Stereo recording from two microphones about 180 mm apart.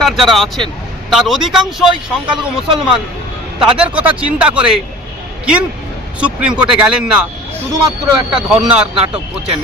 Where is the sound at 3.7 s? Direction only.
5° right (ahead or behind).